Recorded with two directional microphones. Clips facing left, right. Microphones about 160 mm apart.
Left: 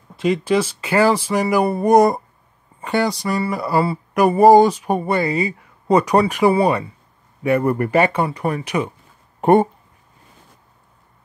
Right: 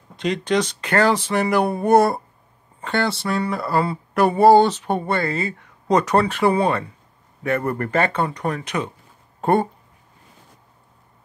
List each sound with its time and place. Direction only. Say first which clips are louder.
0.1 s speech: left 3 dB; 5° left (ahead or behind)
2.0 s speech: left 3 dB; 15° left (ahead or behind)